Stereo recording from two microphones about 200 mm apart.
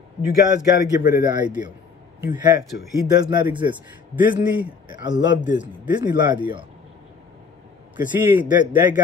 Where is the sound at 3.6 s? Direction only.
20° right (ahead or behind).